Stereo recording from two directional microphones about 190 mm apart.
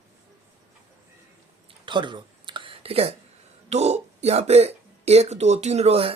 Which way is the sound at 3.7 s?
35° right (ahead or behind).